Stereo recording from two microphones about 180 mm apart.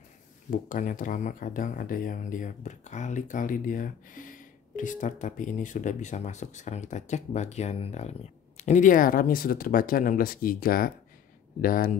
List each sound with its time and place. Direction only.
0.5 s speech: 50° left (ahead or behind)